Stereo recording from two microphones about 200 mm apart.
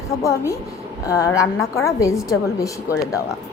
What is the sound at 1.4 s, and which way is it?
Speech, centre (ahead or behind).